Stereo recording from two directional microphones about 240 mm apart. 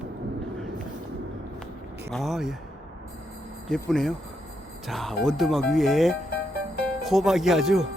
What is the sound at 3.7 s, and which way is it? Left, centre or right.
Speech, centre.